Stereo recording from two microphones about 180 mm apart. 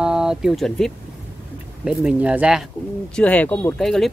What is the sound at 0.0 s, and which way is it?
Speech, 5° right (ahead or behind).